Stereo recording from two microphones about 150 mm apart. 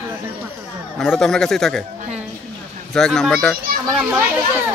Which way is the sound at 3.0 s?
5° left (ahead or behind).